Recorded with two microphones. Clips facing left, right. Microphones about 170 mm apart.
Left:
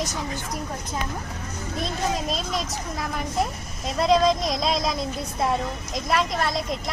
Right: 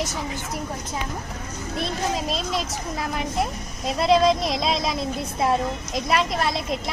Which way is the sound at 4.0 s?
Centre (ahead or behind).